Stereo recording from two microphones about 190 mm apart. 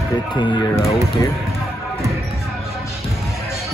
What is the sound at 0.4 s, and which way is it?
Speech, 20° left (ahead or behind).